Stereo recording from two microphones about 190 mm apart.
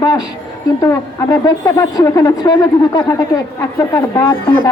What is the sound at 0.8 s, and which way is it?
A woman's voice, 15° left (ahead or behind).